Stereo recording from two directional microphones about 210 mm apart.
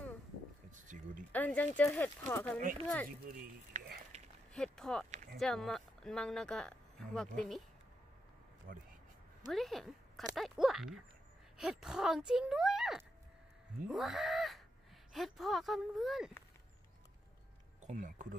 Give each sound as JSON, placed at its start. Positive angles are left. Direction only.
{"t": 0.7, "sound": "a sound", "side_deg": -35}
{"t": 1.3, "sound": "speech", "side_deg": 5}
{"t": 3.3, "sound": "a sound", "side_deg": -45}
{"t": 4.6, "sound": "speech", "side_deg": 5}
{"t": 8.7, "sound": "speech", "side_deg": -40}
{"t": 9.5, "sound": "a woman's voice", "side_deg": 0}
{"t": 17.8, "sound": "speech", "side_deg": -40}